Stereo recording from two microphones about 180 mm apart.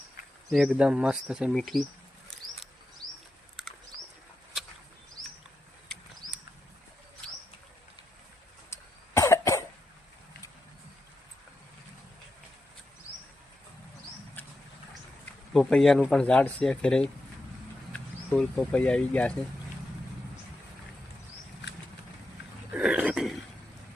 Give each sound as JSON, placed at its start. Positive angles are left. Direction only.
{"t": 0.2, "sound": "cricket", "side_deg": 50}
{"t": 0.5, "sound": "speech", "side_deg": 0}
{"t": 3.6, "sound": "a sound", "side_deg": 0}
{"t": 8.7, "sound": "cough", "side_deg": 15}
{"t": 15.5, "sound": "speech", "side_deg": 0}
{"t": 22.7, "sound": "a sound", "side_deg": -5}